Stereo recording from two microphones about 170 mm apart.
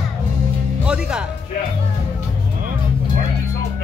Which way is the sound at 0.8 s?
5° right (ahead or behind).